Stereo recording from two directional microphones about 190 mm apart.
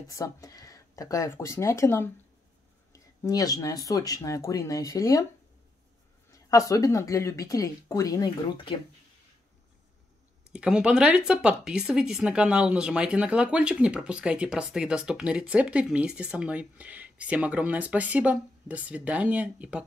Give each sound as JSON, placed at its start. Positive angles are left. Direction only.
{"t": 0.0, "sound": "speech", "side_deg": 20}
{"t": 6.3, "sound": "speech", "side_deg": 15}
{"t": 10.5, "sound": "speech", "side_deg": -5}